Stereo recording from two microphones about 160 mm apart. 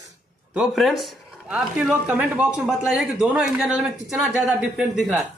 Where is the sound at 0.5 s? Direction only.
5° right (ahead or behind).